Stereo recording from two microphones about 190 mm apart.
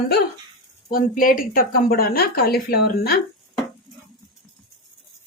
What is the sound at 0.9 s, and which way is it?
Speech, 50° left (ahead or behind).